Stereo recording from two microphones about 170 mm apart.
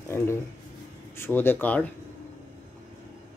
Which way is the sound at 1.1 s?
15° left (ahead or behind).